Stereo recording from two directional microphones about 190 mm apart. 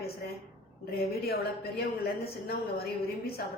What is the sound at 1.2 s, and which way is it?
A woman's voice, 55° left (ahead or behind).